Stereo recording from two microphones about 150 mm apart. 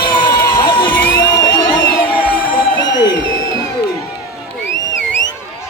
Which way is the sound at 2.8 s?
25° left (ahead or behind).